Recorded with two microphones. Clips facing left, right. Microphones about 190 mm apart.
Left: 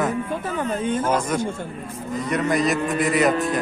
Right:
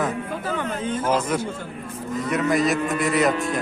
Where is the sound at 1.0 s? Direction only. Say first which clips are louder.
Left 1 dB; 10° right (ahead or behind).